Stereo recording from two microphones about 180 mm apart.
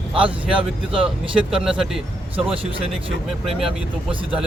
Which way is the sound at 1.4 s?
5° right (ahead or behind).